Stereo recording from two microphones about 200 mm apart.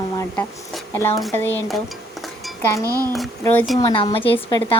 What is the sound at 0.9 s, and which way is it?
Speech, 15° left (ahead or behind).